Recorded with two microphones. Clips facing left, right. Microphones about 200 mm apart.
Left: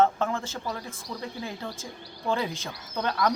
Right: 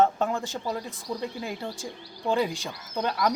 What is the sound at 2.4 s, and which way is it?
Speech, 15° right (ahead or behind).